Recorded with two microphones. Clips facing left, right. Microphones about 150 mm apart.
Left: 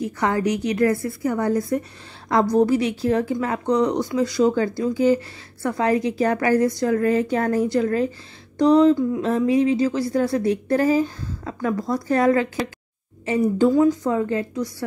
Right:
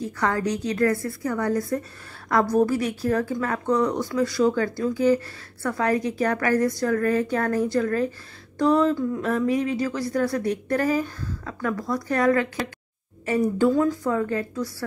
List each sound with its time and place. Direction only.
0.2 s speech: 20° left (ahead or behind)
9.2 s speech: 30° left (ahead or behind)
13.6 s speech: 20° left (ahead or behind)